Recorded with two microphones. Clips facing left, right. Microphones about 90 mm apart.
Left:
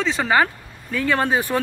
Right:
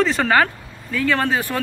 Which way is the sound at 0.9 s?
25° left (ahead or behind).